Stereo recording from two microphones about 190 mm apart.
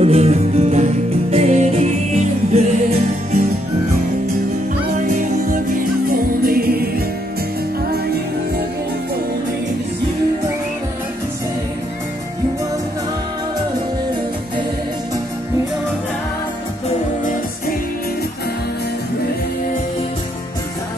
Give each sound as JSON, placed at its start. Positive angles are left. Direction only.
{"t": 0.0, "sound": "music", "side_deg": -35}
{"t": 5.0, "sound": "music", "side_deg": -40}
{"t": 7.9, "sound": "music", "side_deg": -55}
{"t": 17.2, "sound": "music", "side_deg": 45}